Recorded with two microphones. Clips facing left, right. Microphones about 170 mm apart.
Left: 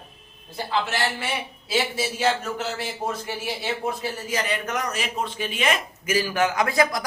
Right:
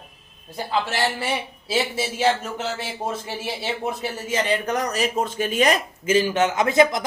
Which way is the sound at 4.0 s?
25° right (ahead or behind).